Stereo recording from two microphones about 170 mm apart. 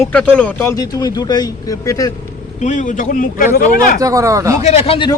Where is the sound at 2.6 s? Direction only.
45° left (ahead or behind).